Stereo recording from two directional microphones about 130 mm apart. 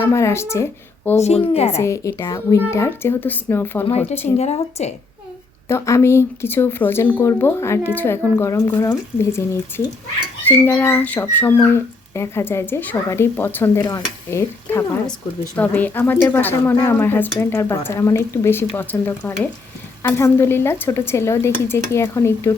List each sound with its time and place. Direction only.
0.0 s speech: 20° left (ahead or behind)
1.2 s a woman's voice: 55° left (ahead or behind)
1.8 s speech: 20° left (ahead or behind)
4.4 s a woman's voice: 55° left (ahead or behind)
5.6 s speech: 20° left (ahead or behind)